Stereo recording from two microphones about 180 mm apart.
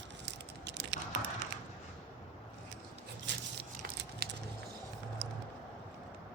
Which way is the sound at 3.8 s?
60° right (ahead or behind).